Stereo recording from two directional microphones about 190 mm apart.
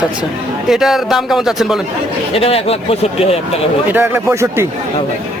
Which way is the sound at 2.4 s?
30° left (ahead or behind).